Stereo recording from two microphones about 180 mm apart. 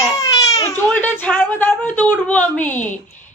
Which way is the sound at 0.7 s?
10° left (ahead or behind).